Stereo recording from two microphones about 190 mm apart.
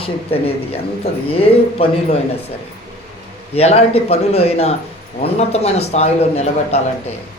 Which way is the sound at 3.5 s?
35° left (ahead or behind).